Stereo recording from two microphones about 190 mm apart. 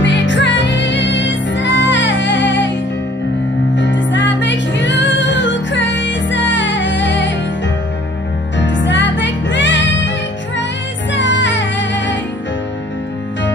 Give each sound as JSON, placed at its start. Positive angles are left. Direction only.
{"t": 0.0, "sound": "music", "side_deg": 70}
{"t": 3.7, "sound": "music", "side_deg": 70}